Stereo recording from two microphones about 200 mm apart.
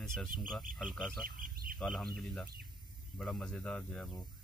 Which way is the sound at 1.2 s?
45° right (ahead or behind).